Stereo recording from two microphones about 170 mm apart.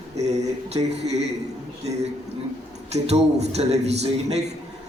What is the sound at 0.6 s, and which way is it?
Speech, 40° right (ahead or behind).